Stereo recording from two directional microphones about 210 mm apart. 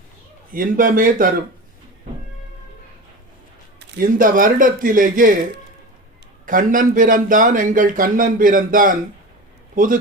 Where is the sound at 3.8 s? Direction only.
50° right (ahead or behind).